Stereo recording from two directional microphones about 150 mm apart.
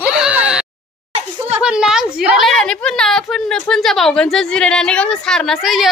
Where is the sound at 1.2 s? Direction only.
45° right (ahead or behind).